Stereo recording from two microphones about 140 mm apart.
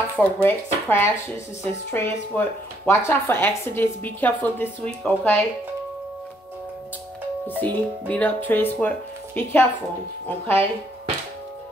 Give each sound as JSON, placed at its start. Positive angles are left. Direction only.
{"t": 0.1, "sound": "a woman's voice", "side_deg": 10}
{"t": 7.4, "sound": "a woman's voice", "side_deg": 10}